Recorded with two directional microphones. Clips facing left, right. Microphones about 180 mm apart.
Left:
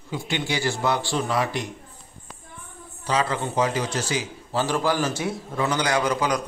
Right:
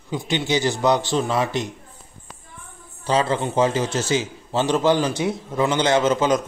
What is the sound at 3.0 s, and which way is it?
Speech, 30° right (ahead or behind).